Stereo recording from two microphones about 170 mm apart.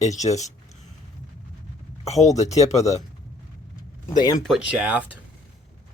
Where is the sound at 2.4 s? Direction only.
40° left (ahead or behind).